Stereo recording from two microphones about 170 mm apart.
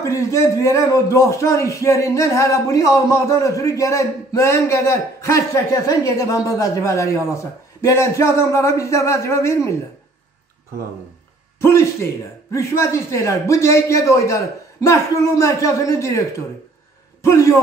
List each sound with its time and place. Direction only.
0.0 s speech: 15° left (ahead or behind)
11.6 s speech: 15° left (ahead or behind)
17.2 s a man's voice: 15° left (ahead or behind)